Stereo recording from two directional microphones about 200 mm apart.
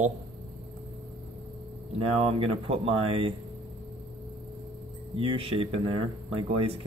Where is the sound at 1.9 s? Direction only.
30° right (ahead or behind).